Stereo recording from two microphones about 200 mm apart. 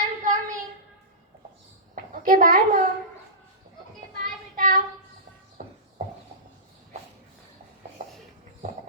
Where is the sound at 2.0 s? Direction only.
45° right (ahead or behind).